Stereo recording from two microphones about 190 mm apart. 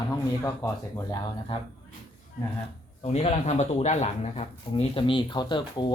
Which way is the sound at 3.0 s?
35° left (ahead or behind).